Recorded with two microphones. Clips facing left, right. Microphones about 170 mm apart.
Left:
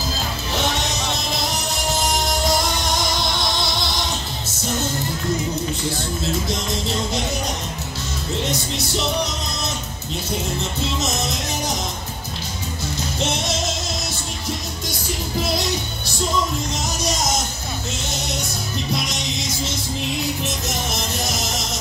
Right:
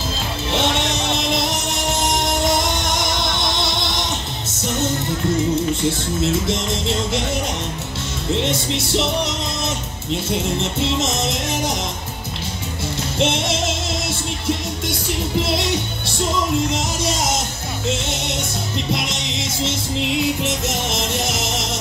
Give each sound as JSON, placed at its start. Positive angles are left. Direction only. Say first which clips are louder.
{"t": 0.5, "sound": "music", "louder": "right 4 dB", "side_deg": -25}
{"t": 6.5, "sound": "music", "louder": "right 2 dB", "side_deg": -25}
{"t": 8.4, "sound": "music", "louder": "right 2 dB", "side_deg": -25}
{"t": 10.6, "sound": "music", "louder": "right 4 dB", "side_deg": -25}
{"t": 13.2, "sound": "music", "louder": "right 5 dB", "side_deg": -25}
{"t": 14.9, "sound": "music", "louder": "right 4 dB", "side_deg": -25}
{"t": 17.0, "sound": "music", "louder": "left 1 dB", "side_deg": -25}
{"t": 20.4, "sound": "music", "louder": "right 3 dB", "side_deg": -25}